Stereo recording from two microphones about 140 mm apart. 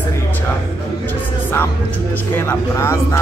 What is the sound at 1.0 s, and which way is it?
Speech, 15° left (ahead or behind).